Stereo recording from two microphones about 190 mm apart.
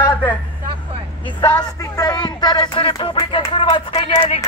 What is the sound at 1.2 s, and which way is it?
Speech, 25° left (ahead or behind).